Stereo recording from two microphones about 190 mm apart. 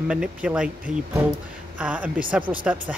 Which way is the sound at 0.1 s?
5° right (ahead or behind).